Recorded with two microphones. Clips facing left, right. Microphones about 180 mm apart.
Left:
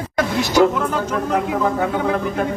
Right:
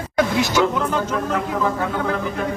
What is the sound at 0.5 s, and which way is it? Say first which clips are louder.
Speech: left 6 dB; 10° left (ahead or behind).